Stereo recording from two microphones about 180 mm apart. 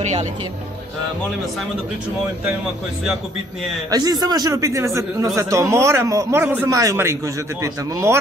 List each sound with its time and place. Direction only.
0.0 s speech: 40° right (ahead or behind)
3.9 s speech: 20° right (ahead or behind)